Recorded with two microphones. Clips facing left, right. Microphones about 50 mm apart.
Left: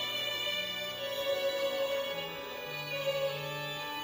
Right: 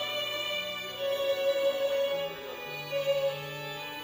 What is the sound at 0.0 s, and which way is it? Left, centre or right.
Music, centre.